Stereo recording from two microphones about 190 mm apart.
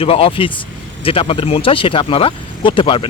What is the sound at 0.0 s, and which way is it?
Speech, 30° left (ahead or behind).